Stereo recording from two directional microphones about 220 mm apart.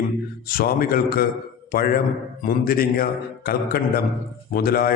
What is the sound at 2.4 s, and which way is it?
A man's voice, 40° left (ahead or behind).